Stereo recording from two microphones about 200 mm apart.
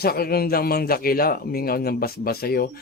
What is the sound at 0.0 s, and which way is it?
Speech, 50° left (ahead or behind).